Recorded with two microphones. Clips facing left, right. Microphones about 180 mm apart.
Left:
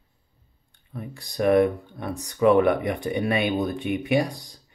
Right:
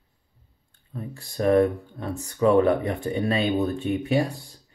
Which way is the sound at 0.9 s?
15° left (ahead or behind).